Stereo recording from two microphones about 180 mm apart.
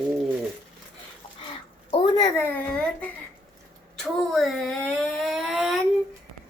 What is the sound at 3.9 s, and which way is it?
Speech, centre (ahead or behind).